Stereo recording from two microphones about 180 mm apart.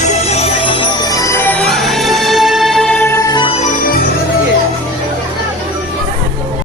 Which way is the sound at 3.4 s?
35° left (ahead or behind).